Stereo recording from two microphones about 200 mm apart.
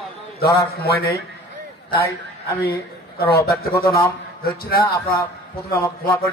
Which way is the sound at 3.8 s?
10° left (ahead or behind).